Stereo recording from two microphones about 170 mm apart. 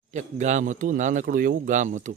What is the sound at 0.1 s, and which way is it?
Speech, 45° right (ahead or behind).